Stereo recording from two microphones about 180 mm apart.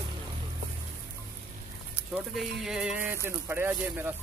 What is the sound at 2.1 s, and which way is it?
Speech, 5° right (ahead or behind).